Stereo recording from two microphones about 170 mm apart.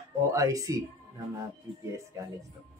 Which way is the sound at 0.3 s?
20° right (ahead or behind).